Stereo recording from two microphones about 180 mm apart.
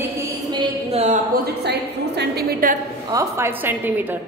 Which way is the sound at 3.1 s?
15° right (ahead or behind).